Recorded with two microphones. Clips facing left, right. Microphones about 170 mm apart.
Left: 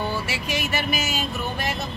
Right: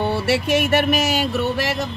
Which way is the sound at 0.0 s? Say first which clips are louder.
Right 8 dB; 65° right (ahead or behind).